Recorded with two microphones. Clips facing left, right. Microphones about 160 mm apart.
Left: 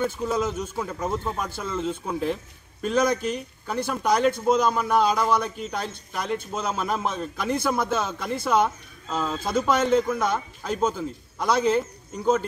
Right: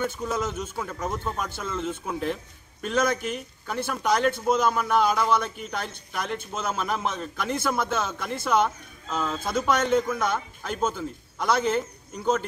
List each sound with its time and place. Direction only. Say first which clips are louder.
0.2 s a man's voice: left 3 dB; 10° left (ahead or behind)